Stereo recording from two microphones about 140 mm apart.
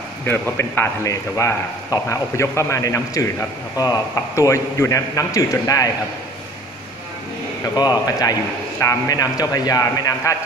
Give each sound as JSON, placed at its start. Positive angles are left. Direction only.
{"t": 0.2, "sound": "a man's voice", "side_deg": 15}
{"t": 7.7, "sound": "a man's voice", "side_deg": 30}